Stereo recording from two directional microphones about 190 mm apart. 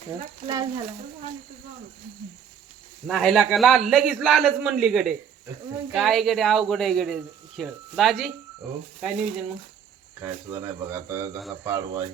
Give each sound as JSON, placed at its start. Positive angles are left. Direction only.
{"t": 0.4, "sound": "speech", "side_deg": -20}
{"t": 3.1, "sound": "speech", "side_deg": 0}